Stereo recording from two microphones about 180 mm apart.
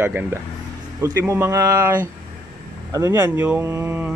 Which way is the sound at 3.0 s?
15° right (ahead or behind).